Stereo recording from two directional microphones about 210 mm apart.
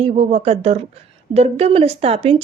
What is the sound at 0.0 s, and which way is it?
Speech, 30° right (ahead or behind).